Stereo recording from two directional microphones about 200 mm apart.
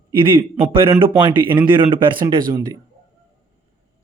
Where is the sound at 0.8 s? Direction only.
25° right (ahead or behind).